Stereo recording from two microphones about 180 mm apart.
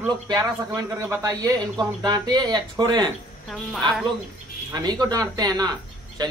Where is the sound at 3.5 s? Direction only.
Centre (ahead or behind).